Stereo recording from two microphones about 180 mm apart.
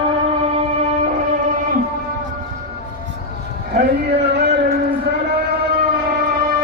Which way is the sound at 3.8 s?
65° right (ahead or behind).